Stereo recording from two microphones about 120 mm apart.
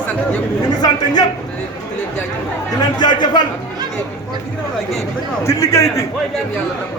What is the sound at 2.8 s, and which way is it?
Speech, 35° left (ahead or behind).